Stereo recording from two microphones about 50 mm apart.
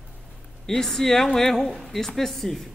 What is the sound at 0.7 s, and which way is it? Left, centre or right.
A woman's voice, centre.